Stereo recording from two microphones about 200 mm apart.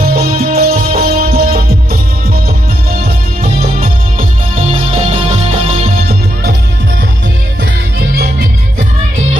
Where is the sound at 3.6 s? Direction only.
45° right (ahead or behind).